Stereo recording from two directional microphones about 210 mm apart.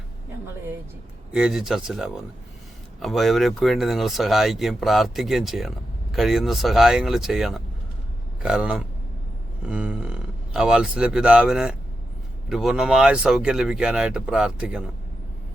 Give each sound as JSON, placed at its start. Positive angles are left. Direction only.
{"t": 1.3, "sound": "a man's voice", "side_deg": -5}